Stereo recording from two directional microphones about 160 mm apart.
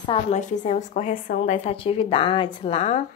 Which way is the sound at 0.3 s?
50° left (ahead or behind).